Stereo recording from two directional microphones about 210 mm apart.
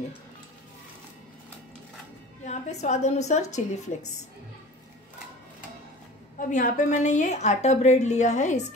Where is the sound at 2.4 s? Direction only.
35° left (ahead or behind).